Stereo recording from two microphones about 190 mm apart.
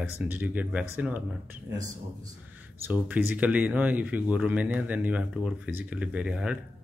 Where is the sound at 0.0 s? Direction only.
10° right (ahead or behind).